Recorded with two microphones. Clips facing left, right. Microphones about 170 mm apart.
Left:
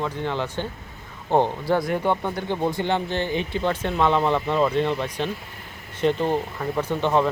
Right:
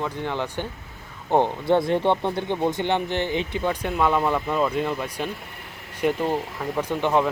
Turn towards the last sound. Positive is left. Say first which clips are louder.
# left 1 dB
turn(degrees=-10)  # may be behind; listen again after turning